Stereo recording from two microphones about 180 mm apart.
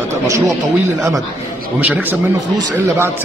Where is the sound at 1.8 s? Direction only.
10° right (ahead or behind).